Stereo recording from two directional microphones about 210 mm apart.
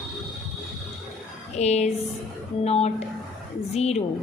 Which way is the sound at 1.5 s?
30° left (ahead or behind).